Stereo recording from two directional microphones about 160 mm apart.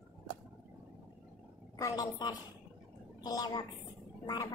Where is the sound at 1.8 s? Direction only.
20° left (ahead or behind).